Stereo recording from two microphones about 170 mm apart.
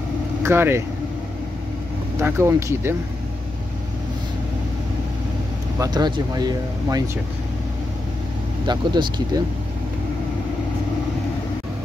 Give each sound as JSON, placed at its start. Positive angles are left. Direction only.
{"t": 0.4, "sound": "speech", "side_deg": -15}
{"t": 2.1, "sound": "speech", "side_deg": -15}
{"t": 5.8, "sound": "speech", "side_deg": -25}
{"t": 8.6, "sound": "speech", "side_deg": -25}